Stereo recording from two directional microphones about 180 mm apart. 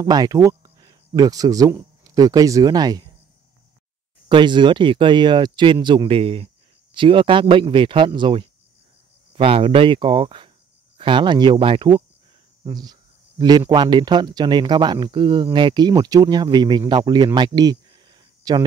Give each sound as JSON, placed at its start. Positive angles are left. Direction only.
{"t": 0.0, "sound": "speech", "side_deg": -20}
{"t": 4.3, "sound": "speech", "side_deg": -25}